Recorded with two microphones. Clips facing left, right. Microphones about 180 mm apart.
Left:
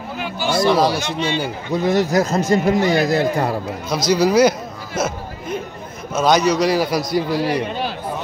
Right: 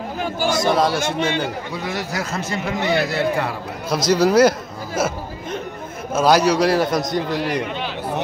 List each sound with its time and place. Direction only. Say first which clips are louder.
0.2 s chatter: left 1 dB; 45° right (ahead or behind)
0.9 s speech: right 1 dB; 50° right (ahead or behind)
1.7 s a man's voice: left 9 dB; 45° left (ahead or behind)
4.1 s a sound: even; centre (ahead or behind)
6.1 s a man's voice: even; 5° right (ahead or behind)